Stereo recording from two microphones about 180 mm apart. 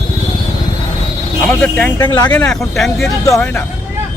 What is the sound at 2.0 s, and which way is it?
Speech, 20° left (ahead or behind).